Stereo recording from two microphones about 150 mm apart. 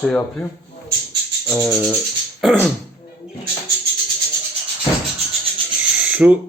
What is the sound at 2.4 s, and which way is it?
Beatboxing, centre (ahead or behind).